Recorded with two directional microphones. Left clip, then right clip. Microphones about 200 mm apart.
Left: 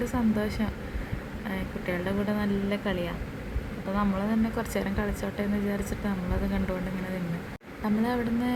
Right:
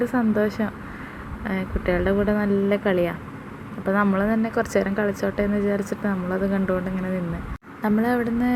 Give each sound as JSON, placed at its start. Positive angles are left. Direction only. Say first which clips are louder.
{"t": 0.0, "sound": "speech", "louder": "right 7 dB", "side_deg": -20}
{"t": 7.8, "sound": "speech", "louder": "right 6 dB", "side_deg": -20}